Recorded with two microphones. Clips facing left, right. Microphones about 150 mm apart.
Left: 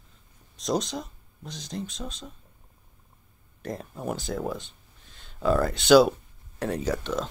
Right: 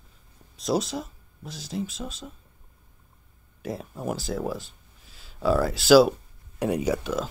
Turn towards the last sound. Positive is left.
turn(degrees=-5)  # may be behind; listen again after turning